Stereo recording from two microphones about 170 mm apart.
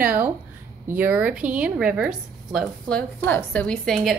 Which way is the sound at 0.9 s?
10° right (ahead or behind).